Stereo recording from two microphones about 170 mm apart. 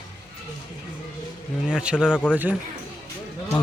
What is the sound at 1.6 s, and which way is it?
Speech, 5° right (ahead or behind).